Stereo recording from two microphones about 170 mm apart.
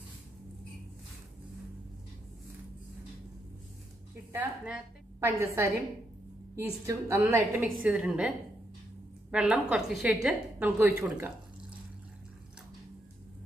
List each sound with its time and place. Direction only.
4.3 s a woman's voice: 10° right (ahead or behind)
9.3 s a woman's voice: 5° right (ahead or behind)